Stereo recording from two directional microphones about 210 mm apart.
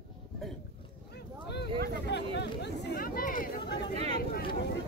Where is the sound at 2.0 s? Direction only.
55° left (ahead or behind).